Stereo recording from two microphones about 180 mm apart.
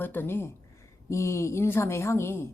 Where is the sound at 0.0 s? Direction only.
10° left (ahead or behind).